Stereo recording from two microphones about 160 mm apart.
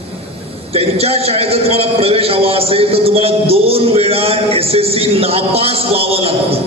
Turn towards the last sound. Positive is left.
turn(degrees=-40)  # may be behind; listen again after turning